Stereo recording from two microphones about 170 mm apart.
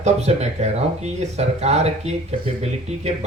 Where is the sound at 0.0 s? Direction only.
40° right (ahead or behind).